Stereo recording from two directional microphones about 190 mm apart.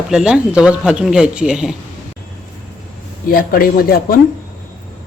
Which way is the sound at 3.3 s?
50° left (ahead or behind).